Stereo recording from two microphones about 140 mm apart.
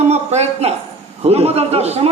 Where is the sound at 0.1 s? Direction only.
50° right (ahead or behind).